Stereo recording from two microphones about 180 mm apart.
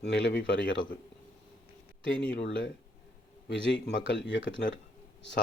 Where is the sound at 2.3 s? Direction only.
90° left.